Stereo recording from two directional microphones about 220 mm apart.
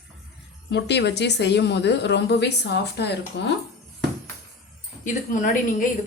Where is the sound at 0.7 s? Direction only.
50° left (ahead or behind).